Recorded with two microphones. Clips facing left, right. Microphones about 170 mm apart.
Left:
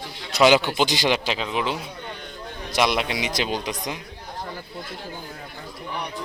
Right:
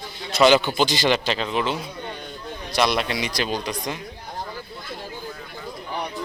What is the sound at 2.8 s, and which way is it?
A man's voice, 15° left (ahead or behind).